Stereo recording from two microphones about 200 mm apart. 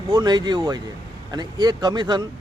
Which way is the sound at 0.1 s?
20° right (ahead or behind).